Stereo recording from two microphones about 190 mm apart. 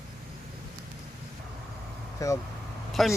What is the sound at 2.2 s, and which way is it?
Speech, 15° left (ahead or behind).